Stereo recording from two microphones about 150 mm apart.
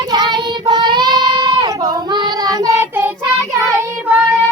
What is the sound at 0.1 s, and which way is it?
Child singing, 30° right (ahead or behind).